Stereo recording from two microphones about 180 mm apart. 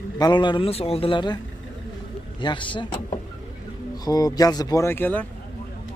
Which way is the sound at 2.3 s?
25° left (ahead or behind).